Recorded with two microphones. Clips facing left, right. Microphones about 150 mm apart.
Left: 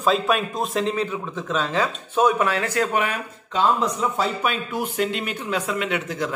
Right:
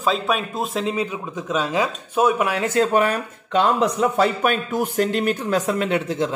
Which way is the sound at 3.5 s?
70° right (ahead or behind).